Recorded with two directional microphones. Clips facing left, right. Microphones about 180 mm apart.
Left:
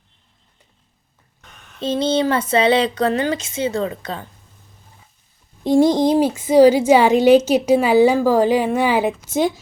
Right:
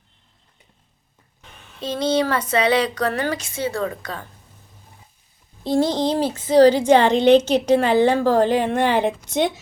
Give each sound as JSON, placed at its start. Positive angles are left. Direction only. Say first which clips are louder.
{"t": 1.8, "sound": "speech", "louder": "left 2 dB", "side_deg": 25}
{"t": 5.6, "sound": "speech", "louder": "left 5 dB", "side_deg": 15}